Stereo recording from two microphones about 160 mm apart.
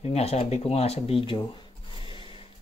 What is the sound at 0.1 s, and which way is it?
Sanding, 40° left (ahead or behind).